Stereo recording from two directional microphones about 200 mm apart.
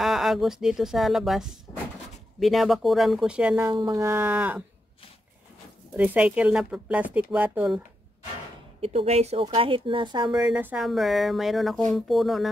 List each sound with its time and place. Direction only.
0.0 s speech: centre (ahead or behind)
5.9 s speech: 5° right (ahead or behind)
8.8 s speech: 30° right (ahead or behind)
10.3 s speech: 5° right (ahead or behind)